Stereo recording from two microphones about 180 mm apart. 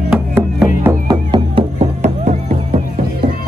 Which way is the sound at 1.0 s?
30° right (ahead or behind).